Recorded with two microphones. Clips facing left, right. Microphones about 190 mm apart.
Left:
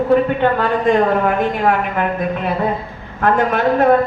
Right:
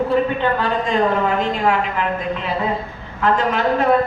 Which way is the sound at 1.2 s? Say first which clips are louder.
Left 2 dB; 50° left (ahead or behind).